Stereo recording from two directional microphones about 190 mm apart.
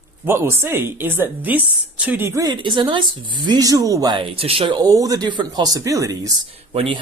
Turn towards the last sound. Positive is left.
turn(degrees=-30)  # may be behind; listen again after turning